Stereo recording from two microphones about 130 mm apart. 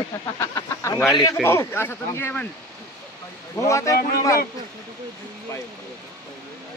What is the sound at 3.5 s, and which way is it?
Speech, 25° left (ahead or behind).